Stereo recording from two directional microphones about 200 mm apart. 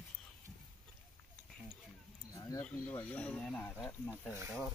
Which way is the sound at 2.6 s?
5° left (ahead or behind).